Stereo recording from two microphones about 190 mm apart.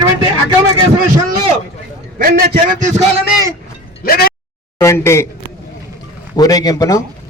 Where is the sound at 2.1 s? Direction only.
50° right (ahead or behind).